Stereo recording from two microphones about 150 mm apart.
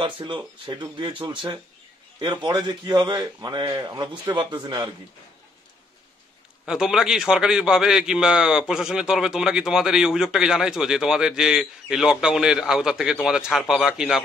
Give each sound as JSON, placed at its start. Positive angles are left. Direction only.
{"t": 0.0, "sound": "a man's voice", "side_deg": -35}
{"t": 6.6, "sound": "a man's voice", "side_deg": -5}